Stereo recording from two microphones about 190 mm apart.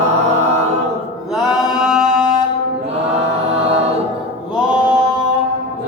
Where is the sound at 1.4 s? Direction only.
Centre (ahead or behind).